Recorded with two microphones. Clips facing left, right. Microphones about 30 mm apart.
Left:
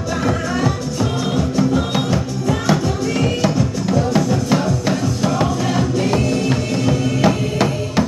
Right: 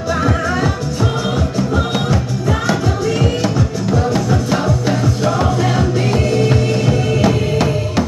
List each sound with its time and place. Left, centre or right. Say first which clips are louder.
0.1 s music: right 3 dB; centre
7.2 s music: right 1 dB; centre